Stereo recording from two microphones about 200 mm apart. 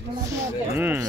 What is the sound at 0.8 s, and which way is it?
Speech, 10° right (ahead or behind).